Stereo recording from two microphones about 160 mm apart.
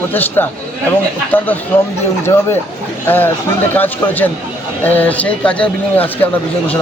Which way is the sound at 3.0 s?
10° left (ahead or behind).